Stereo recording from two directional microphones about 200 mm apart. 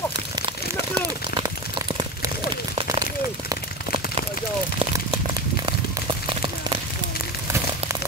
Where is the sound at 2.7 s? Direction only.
25° right (ahead or behind).